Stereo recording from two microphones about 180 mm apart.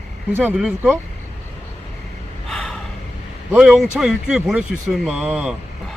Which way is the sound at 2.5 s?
Centre (ahead or behind).